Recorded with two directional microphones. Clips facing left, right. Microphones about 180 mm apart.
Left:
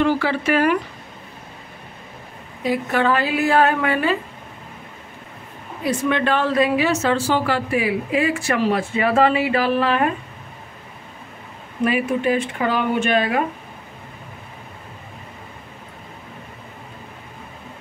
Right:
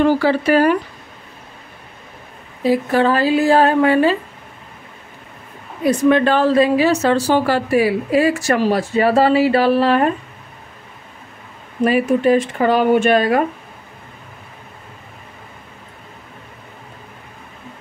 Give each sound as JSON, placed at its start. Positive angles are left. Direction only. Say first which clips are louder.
{"t": 0.0, "sound": "a woman's voice", "louder": "right 5 dB", "side_deg": -40}
{"t": 2.6, "sound": "a woman's voice", "louder": "right 5 dB", "side_deg": -35}
{"t": 5.9, "sound": "a woman's voice", "louder": "right 6 dB", "side_deg": -40}
{"t": 11.8, "sound": "a woman's voice", "louder": "right 5 dB", "side_deg": -40}